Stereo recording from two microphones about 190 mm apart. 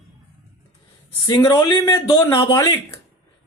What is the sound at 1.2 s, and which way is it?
Speech, 20° left (ahead or behind).